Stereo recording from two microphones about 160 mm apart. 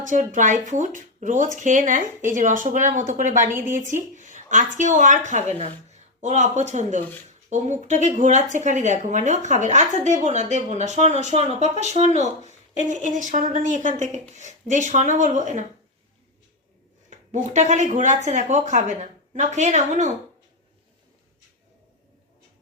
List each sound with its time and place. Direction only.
0.0 s speech: 55° right (ahead or behind)
17.1 s speech: 50° right (ahead or behind)